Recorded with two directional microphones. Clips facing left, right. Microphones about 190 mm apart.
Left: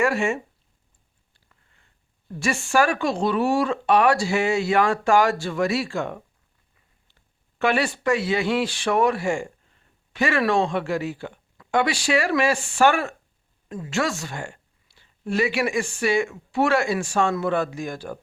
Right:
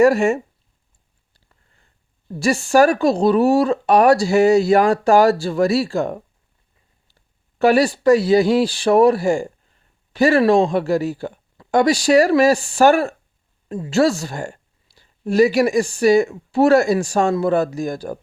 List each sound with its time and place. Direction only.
0.0 s a woman's voice: 40° right (ahead or behind)
1.3 s a sound: 35° right (ahead or behind)
2.4 s a woman's voice: 35° right (ahead or behind)
7.6 s a woman's voice: 40° right (ahead or behind)